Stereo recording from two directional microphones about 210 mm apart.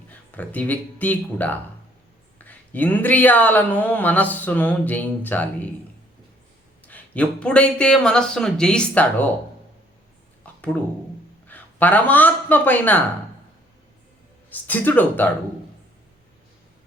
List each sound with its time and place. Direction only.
0.1 s a man's voice: 10° left (ahead or behind)
6.8 s speech: 5° left (ahead or behind)
10.4 s a sound: 5° left (ahead or behind)
11.4 s speech: 10° left (ahead or behind)
14.5 s speech: 10° left (ahead or behind)